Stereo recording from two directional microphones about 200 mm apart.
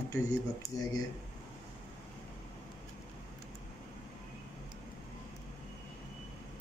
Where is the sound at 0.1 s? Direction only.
15° left (ahead or behind).